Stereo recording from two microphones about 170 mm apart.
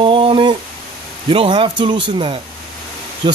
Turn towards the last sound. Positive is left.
turn(degrees=-30)  # may be behind; listen again after turning